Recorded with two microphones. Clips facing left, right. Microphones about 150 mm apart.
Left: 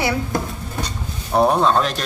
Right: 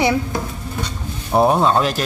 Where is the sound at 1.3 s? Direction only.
5° right (ahead or behind).